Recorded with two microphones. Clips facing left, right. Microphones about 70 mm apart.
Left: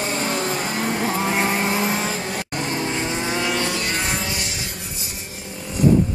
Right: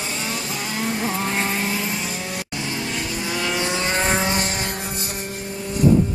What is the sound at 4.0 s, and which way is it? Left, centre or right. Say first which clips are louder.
Vehicle: right 5 dB; right.